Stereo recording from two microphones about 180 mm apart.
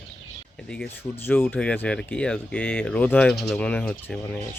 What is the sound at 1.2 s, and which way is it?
Speech, 10° left (ahead or behind).